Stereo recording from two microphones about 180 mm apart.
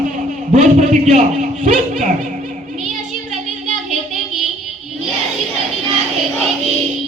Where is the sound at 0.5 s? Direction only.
40° right (ahead or behind).